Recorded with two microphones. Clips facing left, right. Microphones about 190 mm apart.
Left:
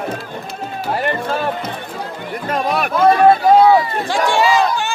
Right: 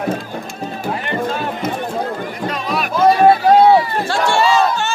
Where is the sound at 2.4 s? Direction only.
50° left (ahead or behind).